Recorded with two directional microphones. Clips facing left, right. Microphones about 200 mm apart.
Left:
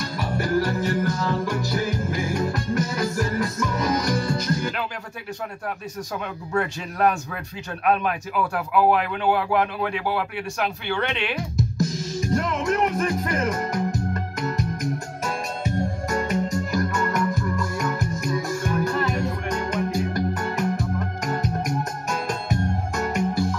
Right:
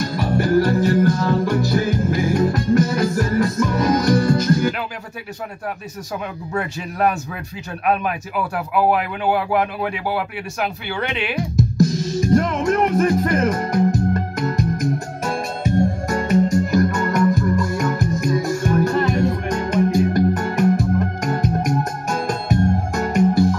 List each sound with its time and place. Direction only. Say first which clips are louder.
0.0 s music: right 7 dB; 40° right (ahead or behind)
4.2 s music: right 8 dB; 50° right (ahead or behind)
6.5 s speech: left 1 dB; 5° right (ahead or behind)
12.4 s speech: right 4 dB; 40° right (ahead or behind)
16.1 s music: right 5 dB; 40° right (ahead or behind)
22.1 s music: right 6 dB; 40° right (ahead or behind)